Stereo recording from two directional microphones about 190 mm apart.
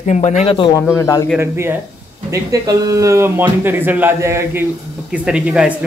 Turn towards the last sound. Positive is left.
turn(degrees=-5)  # may be behind; listen again after turning